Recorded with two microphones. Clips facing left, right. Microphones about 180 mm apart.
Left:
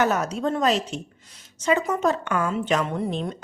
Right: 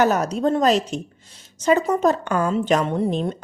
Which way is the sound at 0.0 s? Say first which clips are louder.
Right 4 dB; 35° right (ahead or behind).